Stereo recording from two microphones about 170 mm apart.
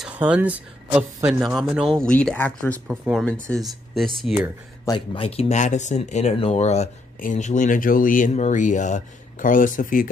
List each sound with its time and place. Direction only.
0.0 s speech: 10° right (ahead or behind); by 2.8 s 10° left (ahead or behind)
2.9 s speech: 10° right (ahead or behind)
3.3 s speech: 5° left (ahead or behind)
4.8 s speech: 30° left (ahead or behind); by 10.0 s 55° left (ahead or behind)